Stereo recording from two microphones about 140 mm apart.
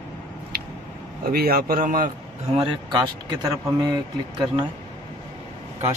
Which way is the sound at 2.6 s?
35° right (ahead or behind).